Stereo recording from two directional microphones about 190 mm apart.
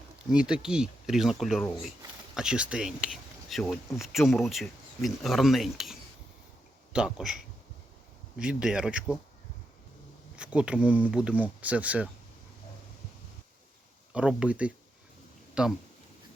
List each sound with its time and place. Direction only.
0.3 s speech: 5° right (ahead or behind)
10.3 s speech: 5° right (ahead or behind)
14.1 s speech: 5° right (ahead or behind)